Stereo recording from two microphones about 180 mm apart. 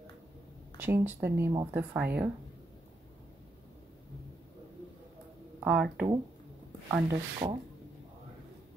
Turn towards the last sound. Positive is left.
turn(degrees=-15)  # may be behind; listen again after turning